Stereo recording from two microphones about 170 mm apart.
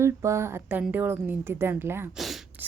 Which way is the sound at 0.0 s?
15° right (ahead or behind).